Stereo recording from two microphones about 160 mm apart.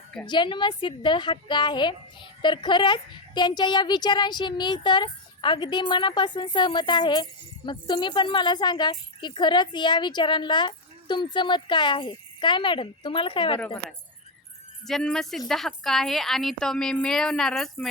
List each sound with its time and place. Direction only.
0.3 s a woman's voice: 30° left (ahead or behind)
14.8 s a woman's voice: 5° left (ahead or behind)